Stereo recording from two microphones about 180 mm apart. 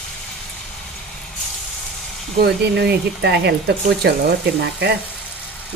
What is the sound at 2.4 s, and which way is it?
Speech, 65° right (ahead or behind).